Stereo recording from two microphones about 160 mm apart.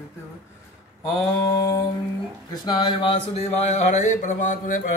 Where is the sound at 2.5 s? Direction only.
25° left (ahead or behind).